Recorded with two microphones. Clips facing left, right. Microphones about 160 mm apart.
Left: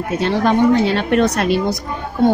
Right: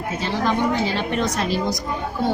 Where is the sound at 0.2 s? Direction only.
65° left (ahead or behind).